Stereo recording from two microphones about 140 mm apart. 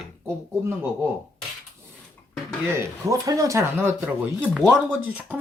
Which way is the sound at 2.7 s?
25° right (ahead or behind).